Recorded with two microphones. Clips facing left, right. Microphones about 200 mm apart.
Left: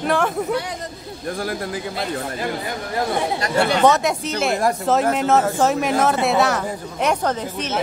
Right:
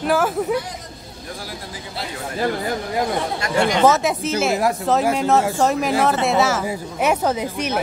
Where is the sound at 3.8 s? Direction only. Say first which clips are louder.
Right 2 dB; centre (ahead or behind).